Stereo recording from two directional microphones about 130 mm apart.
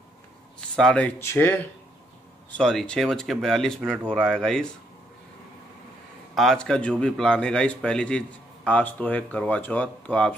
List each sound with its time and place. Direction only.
0.7 s a man's voice: 10° left (ahead or behind)
1.2 s speech: 20° left (ahead or behind)
2.5 s speech: 5° left (ahead or behind)
6.3 s a man's voice: centre (ahead or behind)